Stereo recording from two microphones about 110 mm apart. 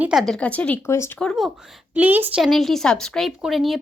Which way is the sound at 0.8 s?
25° left (ahead or behind).